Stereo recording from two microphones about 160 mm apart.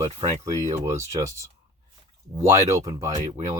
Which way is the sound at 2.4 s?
20° right (ahead or behind).